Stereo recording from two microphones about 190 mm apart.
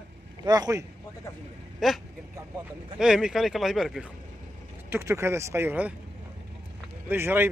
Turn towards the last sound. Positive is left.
turn(degrees=-10)  # may be behind; listen again after turning